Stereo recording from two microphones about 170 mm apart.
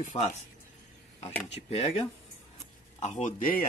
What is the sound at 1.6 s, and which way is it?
Speech, 40° left (ahead or behind).